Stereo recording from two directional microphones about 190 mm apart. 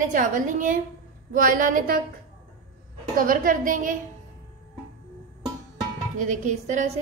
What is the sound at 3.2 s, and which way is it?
Speech, 45° right (ahead or behind).